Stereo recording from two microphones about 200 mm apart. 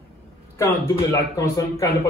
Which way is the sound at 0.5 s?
15° left (ahead or behind).